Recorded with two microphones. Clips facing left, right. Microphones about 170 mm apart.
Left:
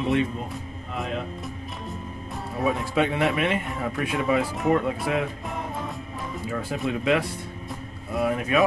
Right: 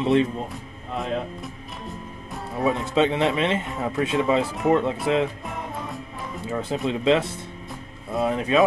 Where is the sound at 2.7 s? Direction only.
25° right (ahead or behind).